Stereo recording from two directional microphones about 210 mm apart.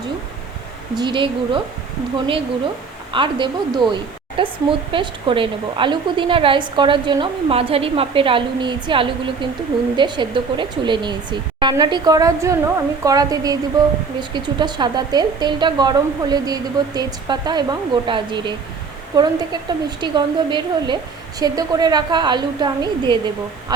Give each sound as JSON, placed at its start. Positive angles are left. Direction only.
{"t": 0.9, "sound": "a woman's voice", "side_deg": -20}
{"t": 3.1, "sound": "a woman's voice", "side_deg": -25}